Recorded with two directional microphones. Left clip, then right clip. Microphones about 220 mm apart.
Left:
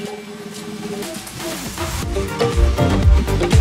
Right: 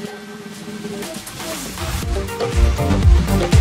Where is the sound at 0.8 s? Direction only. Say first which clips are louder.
Left 1 dB; centre (ahead or behind).